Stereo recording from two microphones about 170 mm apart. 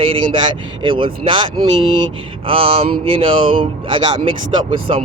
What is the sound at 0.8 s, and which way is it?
Speech, 30° right (ahead or behind).